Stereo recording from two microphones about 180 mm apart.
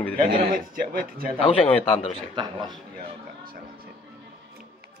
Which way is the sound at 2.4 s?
25° right (ahead or behind).